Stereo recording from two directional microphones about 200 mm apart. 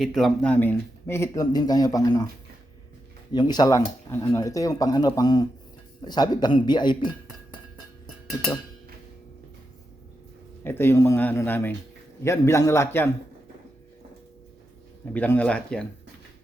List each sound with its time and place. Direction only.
0.0 s speech: centre (ahead or behind); by 2.2 s 20° left (ahead or behind)
3.3 s speech: 20° left (ahead or behind)
10.6 s speech: 10° left (ahead or behind)
15.1 s speech: 10° left (ahead or behind)